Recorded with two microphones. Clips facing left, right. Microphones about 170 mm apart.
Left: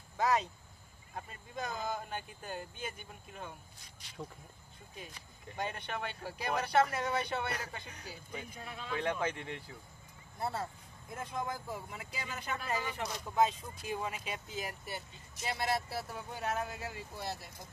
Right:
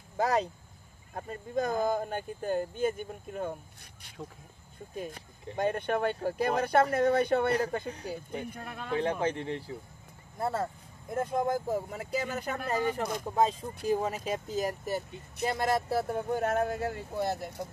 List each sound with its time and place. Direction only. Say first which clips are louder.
0.2 s speech: right 4 dB; 40° right (ahead or behind)
9.2 s speech: right 6 dB; 30° right (ahead or behind)
10.4 s speech: right 6 dB; 50° right (ahead or behind)
13.3 s speech: right 2 dB; 35° right (ahead or behind); by 17.6 s 60° right (ahead or behind)